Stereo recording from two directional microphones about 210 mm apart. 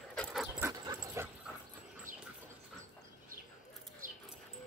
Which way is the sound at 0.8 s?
20° right (ahead or behind).